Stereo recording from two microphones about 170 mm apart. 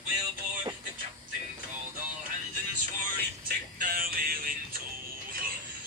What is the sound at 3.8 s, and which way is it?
Music, 55° right (ahead or behind).